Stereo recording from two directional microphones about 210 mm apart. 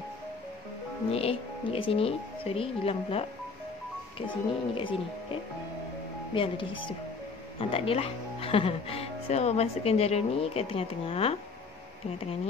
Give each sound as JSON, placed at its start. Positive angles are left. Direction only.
{"t": 1.1, "sound": "speech", "side_deg": 30}
{"t": 4.3, "sound": "speech", "side_deg": 25}